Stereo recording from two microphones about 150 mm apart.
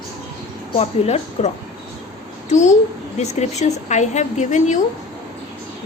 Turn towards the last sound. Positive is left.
turn(degrees=55)  # may be behind; listen again after turning